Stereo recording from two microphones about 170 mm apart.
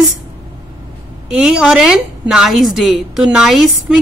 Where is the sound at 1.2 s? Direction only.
5° right (ahead or behind).